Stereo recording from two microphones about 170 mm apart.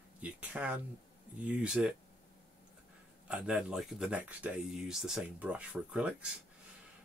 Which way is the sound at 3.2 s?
5° right (ahead or behind).